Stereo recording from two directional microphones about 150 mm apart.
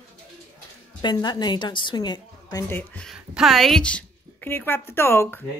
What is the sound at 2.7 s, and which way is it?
Speech, 15° left (ahead or behind).